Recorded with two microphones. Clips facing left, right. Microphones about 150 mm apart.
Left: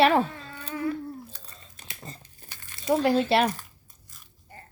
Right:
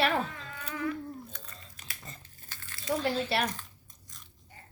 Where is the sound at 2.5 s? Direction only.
15° left (ahead or behind).